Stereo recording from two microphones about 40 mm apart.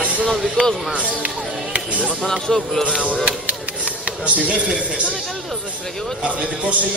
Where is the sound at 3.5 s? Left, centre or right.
Right.